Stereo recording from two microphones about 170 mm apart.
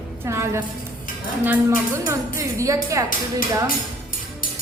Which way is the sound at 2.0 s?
15° right (ahead or behind).